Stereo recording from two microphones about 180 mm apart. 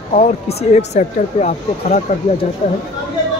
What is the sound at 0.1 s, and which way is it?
Speech, 35° left (ahead or behind).